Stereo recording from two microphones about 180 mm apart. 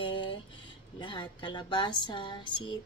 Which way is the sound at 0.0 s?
25° left (ahead or behind).